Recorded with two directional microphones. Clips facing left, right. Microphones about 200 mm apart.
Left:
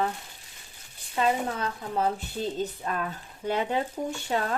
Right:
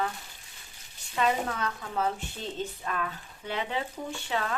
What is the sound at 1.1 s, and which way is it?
Speech, 30° left (ahead or behind).